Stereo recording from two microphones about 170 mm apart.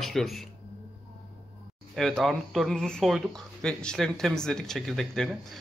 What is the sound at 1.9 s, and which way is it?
Speech, centre (ahead or behind).